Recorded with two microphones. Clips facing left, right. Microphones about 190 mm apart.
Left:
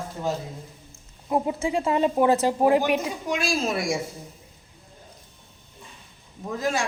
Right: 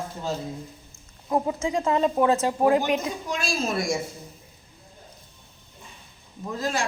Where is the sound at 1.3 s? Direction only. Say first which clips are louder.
Even; 15° left (ahead or behind).